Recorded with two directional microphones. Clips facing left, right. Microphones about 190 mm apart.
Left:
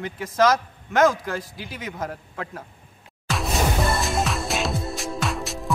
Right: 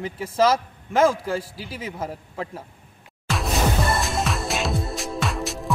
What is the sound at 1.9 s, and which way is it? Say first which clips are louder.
Speech: even; 5° right (ahead or behind).